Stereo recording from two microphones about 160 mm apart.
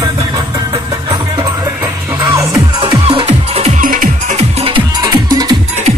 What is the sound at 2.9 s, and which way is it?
Music, 30° right (ahead or behind).